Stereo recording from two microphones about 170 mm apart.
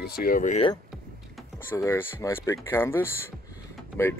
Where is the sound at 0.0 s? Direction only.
60° left (ahead or behind); by 0.7 s 45° left (ahead or behind).